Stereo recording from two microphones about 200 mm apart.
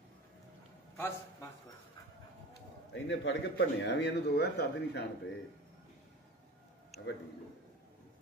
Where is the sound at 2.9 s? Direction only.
65° left (ahead or behind).